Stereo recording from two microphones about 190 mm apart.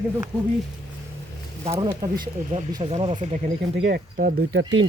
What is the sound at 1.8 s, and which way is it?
Speech, 25° right (ahead or behind).